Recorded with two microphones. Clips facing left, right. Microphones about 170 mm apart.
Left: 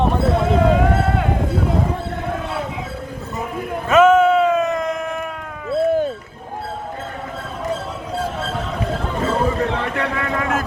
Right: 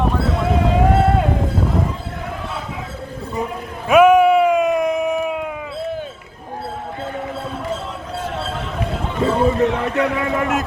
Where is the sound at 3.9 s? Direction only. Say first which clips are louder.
Right 1 dB; 10° right (ahead or behind).